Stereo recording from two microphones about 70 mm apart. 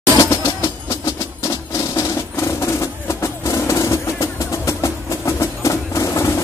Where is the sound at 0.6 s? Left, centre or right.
Left.